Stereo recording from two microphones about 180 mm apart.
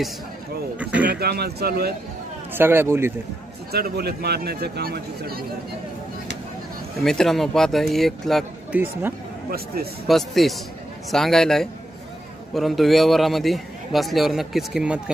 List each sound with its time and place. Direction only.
1.0 s a man's voice: 60° right (ahead or behind)
2.5 s speech: 10° right (ahead or behind)
3.7 s speech: 60° right (ahead or behind)
7.0 s a man's voice: centre (ahead or behind)
10.0 s a man's voice: centre (ahead or behind)